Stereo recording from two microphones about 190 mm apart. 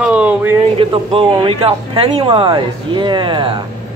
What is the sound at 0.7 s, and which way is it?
Speech, 25° right (ahead or behind).